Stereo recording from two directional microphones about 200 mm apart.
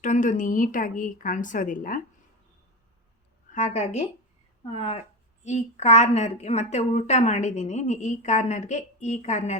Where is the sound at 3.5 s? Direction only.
35° left (ahead or behind).